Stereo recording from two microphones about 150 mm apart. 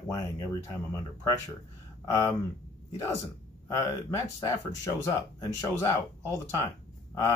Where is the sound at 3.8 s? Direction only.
20° left (ahead or behind).